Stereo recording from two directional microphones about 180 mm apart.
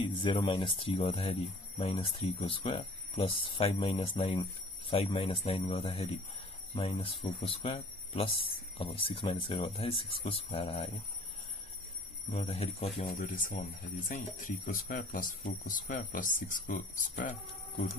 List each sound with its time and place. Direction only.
0.0 s speech: 30° left (ahead or behind)
12.3 s speech: 35° left (ahead or behind)